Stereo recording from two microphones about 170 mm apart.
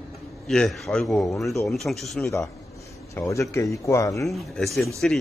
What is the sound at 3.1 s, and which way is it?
Speech, 20° left (ahead or behind).